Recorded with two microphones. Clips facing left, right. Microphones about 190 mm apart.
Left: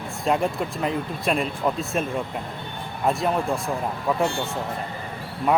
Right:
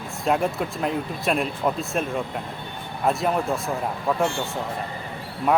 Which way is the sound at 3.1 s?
Centre (ahead or behind).